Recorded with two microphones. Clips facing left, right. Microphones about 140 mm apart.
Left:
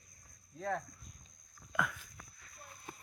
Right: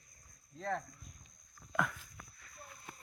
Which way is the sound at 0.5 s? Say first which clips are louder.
Left 1 dB; 5° left (ahead or behind).